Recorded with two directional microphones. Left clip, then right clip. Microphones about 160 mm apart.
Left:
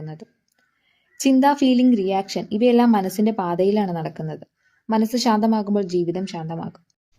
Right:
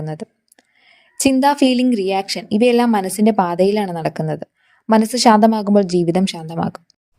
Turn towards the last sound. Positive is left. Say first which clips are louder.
# right 7 dB
turn(degrees=-50)  # may be behind; listen again after turning